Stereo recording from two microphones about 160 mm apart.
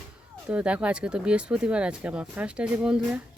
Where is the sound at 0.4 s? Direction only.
5° right (ahead or behind).